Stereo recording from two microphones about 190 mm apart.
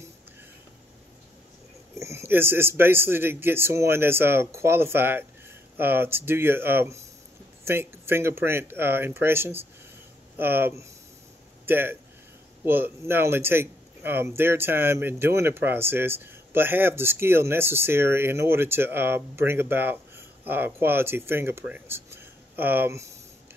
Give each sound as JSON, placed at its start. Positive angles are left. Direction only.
{"t": 2.0, "sound": "a man's voice", "side_deg": -15}